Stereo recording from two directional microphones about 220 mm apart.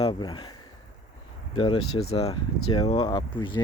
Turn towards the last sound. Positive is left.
turn(degrees=20)  # may be behind; listen again after turning